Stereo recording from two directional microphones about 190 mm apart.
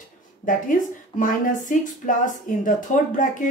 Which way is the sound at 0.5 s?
45° left (ahead or behind).